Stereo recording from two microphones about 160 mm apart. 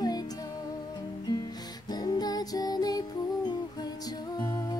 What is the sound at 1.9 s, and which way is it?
Music, 25° left (ahead or behind).